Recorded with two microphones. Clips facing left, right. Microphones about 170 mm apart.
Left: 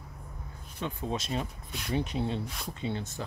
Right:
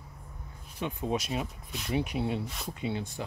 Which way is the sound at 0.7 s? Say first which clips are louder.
Right 2 dB; 15° right (ahead or behind).